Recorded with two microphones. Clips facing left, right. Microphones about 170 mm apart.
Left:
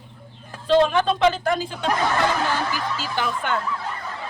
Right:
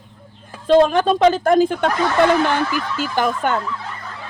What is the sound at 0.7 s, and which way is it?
Speech, 45° right (ahead or behind).